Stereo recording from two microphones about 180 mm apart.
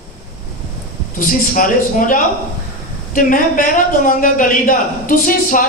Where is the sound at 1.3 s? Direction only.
50° left (ahead or behind).